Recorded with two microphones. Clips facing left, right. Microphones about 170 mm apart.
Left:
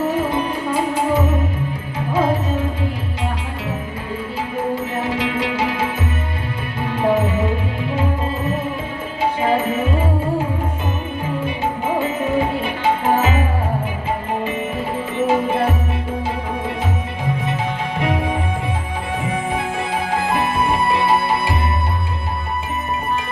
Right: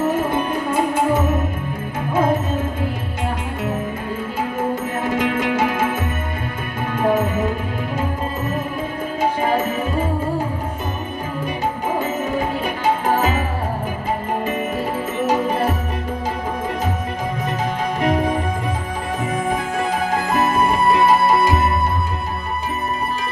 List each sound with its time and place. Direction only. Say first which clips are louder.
0.3 s music: even; 50° right (ahead or behind)
4.7 s music: even; 45° right (ahead or behind)
6.9 s music: left 1 dB; 45° right (ahead or behind)
11.9 s music: left 2 dB; 40° right (ahead or behind)
15.3 s music: left 1 dB; 40° right (ahead or behind)
18.0 s music: right 2 dB; 40° right (ahead or behind)